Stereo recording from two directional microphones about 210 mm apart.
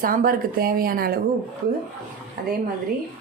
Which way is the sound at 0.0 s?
40° right (ahead or behind).